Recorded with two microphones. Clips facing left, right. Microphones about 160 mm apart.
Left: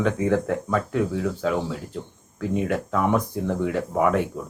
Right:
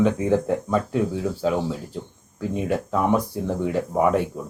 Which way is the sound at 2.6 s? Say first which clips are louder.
Right 3 dB; 15° right (ahead or behind).